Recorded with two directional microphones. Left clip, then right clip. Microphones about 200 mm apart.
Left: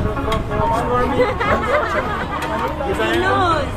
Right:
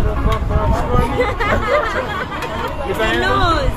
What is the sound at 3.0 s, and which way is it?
Speech, 45° right (ahead or behind).